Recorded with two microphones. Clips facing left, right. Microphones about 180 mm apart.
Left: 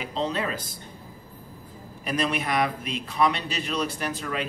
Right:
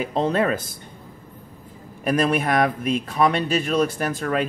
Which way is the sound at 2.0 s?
50° right (ahead or behind).